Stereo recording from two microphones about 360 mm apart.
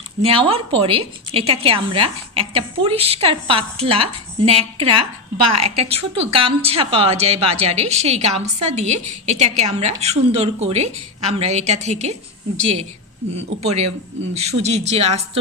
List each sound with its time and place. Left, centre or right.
0.2 s a woman's voice: centre
5.4 s a woman's voice: right
5.8 s a woman's voice: centre